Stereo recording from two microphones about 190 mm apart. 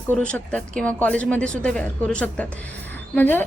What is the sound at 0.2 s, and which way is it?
Speech, 5° left (ahead or behind).